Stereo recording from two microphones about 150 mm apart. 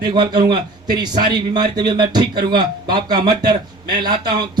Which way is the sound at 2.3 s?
90° right.